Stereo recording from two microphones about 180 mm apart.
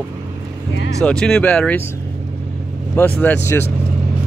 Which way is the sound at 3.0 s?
10° left (ahead or behind).